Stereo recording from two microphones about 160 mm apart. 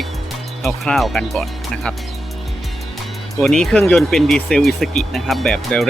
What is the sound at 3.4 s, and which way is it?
Speech, centre (ahead or behind).